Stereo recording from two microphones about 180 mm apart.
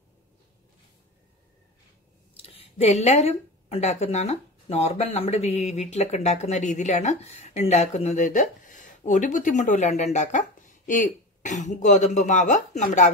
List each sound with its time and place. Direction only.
2.4 s speech: 35° left (ahead or behind)